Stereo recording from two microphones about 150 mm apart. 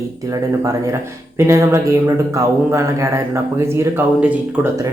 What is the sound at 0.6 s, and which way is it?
Speech, 20° right (ahead or behind).